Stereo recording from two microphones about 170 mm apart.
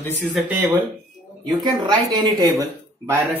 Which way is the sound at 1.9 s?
20° right (ahead or behind).